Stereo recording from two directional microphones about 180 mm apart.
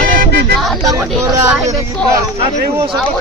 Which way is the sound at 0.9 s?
20° right (ahead or behind).